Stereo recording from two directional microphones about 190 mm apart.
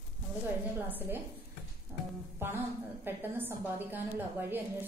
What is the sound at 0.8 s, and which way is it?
Speech, 10° right (ahead or behind).